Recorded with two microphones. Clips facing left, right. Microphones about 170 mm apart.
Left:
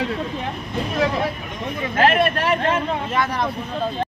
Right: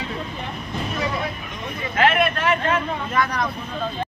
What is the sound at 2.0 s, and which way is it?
Speech, 35° left (ahead or behind).